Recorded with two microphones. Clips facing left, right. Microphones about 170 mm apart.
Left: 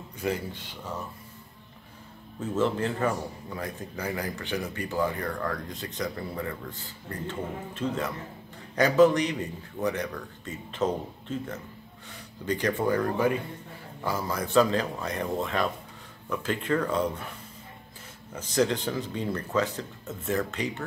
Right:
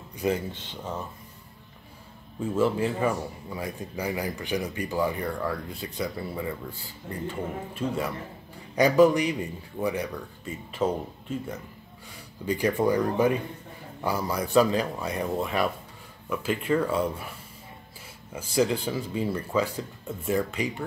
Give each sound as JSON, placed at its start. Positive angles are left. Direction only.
{"t": 0.2, "sound": "speech", "side_deg": -20}
{"t": 2.4, "sound": "a man's voice", "side_deg": -10}
{"t": 18.3, "sound": "a man's voice", "side_deg": -10}